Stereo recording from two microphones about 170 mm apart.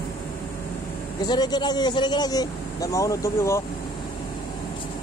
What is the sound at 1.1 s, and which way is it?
Speech, 25° left (ahead or behind).